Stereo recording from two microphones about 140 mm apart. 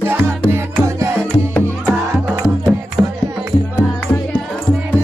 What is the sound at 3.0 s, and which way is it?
Music, 20° right (ahead or behind).